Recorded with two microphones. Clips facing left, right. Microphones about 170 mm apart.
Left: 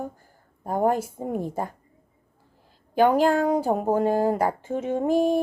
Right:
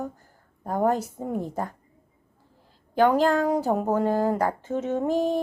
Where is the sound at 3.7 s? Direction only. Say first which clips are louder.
Even; 25° left (ahead or behind).